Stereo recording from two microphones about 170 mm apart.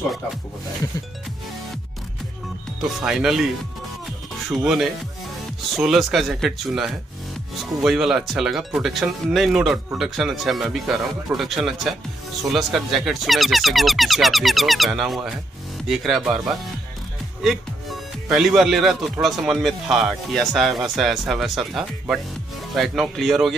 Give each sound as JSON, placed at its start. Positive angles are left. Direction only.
{"t": 2.8, "sound": "speech", "side_deg": 0}
{"t": 4.5, "sound": "speech", "side_deg": 0}